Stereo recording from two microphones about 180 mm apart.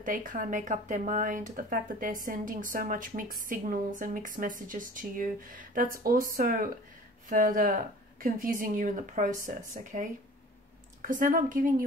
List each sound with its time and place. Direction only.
0.0 s a woman's voice: 45° right (ahead or behind)
11.1 s a woman's voice: 50° right (ahead or behind)